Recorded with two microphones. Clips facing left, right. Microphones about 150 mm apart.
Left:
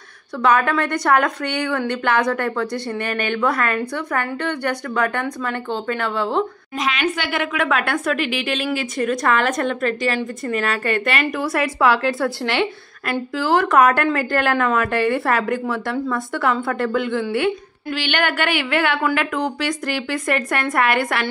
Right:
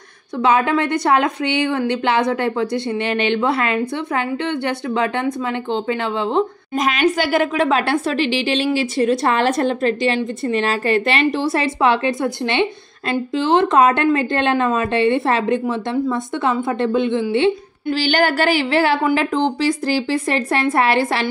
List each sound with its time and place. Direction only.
0.4 s a woman's voice: 20° right (ahead or behind)
6.8 s a woman's voice: 40° right (ahead or behind)